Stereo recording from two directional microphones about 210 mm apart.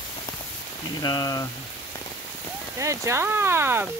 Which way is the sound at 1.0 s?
20° left (ahead or behind).